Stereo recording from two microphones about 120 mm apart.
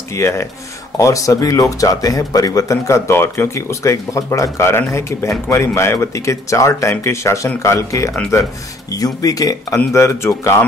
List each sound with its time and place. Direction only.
0.1 s speech: 25° left (ahead or behind)